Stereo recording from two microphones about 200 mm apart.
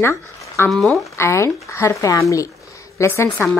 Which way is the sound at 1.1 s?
15° left (ahead or behind).